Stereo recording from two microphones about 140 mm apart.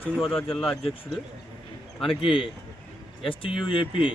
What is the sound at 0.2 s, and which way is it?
Speech, 5° left (ahead or behind).